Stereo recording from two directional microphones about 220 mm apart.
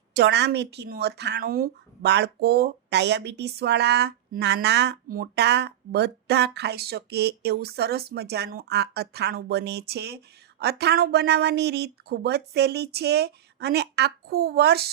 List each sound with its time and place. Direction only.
0.1 s speech: 50° right (ahead or behind)